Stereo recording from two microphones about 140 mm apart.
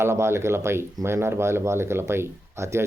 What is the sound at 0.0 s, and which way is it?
Speech, 20° right (ahead or behind).